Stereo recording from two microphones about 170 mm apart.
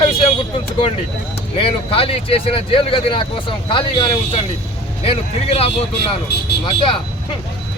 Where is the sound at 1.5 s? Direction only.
35° left (ahead or behind).